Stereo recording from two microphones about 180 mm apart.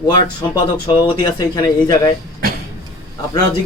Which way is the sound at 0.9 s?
25° left (ahead or behind).